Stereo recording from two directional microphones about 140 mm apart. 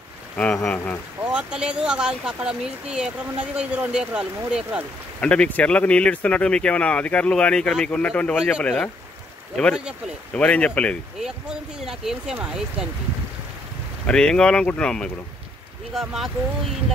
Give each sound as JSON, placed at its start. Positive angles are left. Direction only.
{"t": 0.4, "sound": "speech", "side_deg": 10}
{"t": 1.2, "sound": "speech", "side_deg": -5}
{"t": 5.2, "sound": "speech", "side_deg": 10}
{"t": 8.4, "sound": "speech", "side_deg": -5}
{"t": 8.6, "sound": "speech", "side_deg": 10}
{"t": 10.3, "sound": "speech", "side_deg": 10}
{"t": 11.1, "sound": "speech", "side_deg": -5}
{"t": 14.0, "sound": "speech", "side_deg": 5}